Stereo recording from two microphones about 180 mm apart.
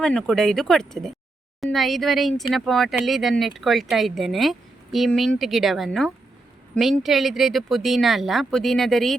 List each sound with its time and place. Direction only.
0.0 s speech: 5° left (ahead or behind)